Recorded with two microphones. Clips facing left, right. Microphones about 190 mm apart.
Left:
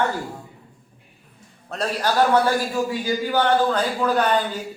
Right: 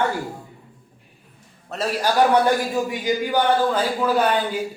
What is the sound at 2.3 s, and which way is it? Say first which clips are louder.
Speech: right 1 dB; 20° right (ahead or behind).